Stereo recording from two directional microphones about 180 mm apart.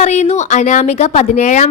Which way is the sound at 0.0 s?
40° left (ahead or behind).